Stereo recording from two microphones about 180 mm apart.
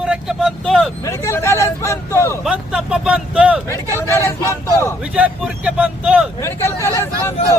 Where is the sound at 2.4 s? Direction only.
5° right (ahead or behind).